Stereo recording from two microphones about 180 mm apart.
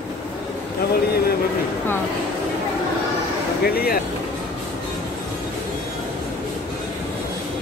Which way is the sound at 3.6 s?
55° left (ahead or behind).